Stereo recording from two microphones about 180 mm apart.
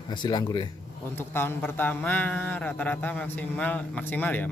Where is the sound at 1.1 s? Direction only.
10° left (ahead or behind).